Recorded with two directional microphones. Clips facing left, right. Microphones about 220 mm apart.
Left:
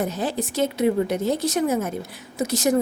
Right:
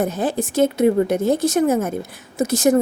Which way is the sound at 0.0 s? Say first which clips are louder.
Right 4 dB; 50° right (ahead or behind).